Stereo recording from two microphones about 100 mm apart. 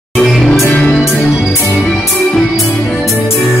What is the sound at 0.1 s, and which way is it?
Music, 5° left (ahead or behind).